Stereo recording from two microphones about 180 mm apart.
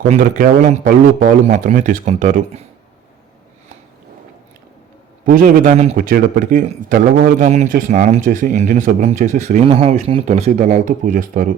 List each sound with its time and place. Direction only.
0.0 s a man's voice: 45° right (ahead or behind)
5.2 s a man's voice: 50° right (ahead or behind)
6.0 s a man's voice: 50° right (ahead or behind)